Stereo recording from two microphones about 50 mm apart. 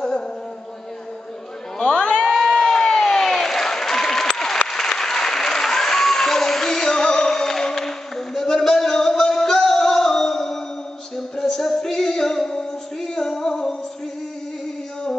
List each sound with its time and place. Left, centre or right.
1.8 s crowd: left
2.3 s applause: centre
11.1 s music: centre